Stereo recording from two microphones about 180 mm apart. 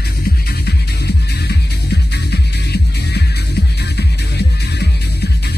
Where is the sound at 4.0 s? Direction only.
65° left (ahead or behind).